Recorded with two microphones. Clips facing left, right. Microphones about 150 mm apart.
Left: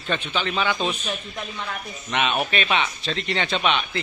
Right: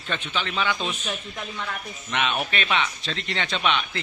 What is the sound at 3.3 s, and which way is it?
Speech, 30° left (ahead or behind).